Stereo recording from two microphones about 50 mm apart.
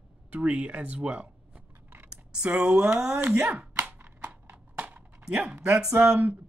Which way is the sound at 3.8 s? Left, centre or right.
Right.